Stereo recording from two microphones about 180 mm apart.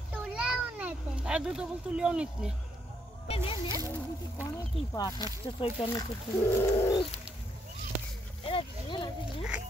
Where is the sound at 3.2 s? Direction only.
30° left (ahead or behind).